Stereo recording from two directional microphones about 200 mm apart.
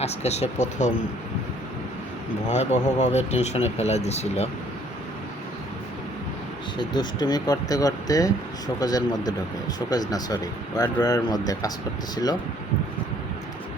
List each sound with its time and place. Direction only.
0.0 s speech: 30° left (ahead or behind)
2.5 s speech: 35° left (ahead or behind)
6.7 s speech: 20° left (ahead or behind)